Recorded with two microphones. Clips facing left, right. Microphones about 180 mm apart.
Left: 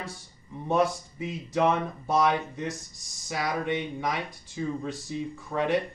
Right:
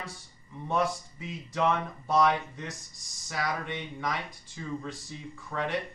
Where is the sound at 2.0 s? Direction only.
10° left (ahead or behind).